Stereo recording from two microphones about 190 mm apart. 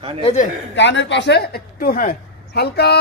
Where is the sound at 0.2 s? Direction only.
35° left (ahead or behind).